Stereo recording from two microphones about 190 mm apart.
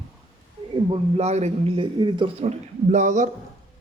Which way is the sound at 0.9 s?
35° right (ahead or behind).